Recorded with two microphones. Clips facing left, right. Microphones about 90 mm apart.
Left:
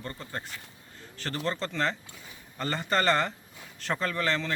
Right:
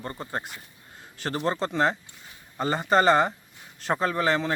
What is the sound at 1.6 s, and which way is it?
Speech, 40° right (ahead or behind).